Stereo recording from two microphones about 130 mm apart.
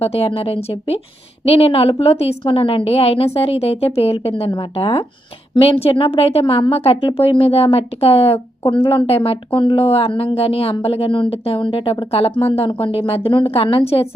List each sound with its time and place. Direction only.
0.0 s a woman's voice: 50° left (ahead or behind)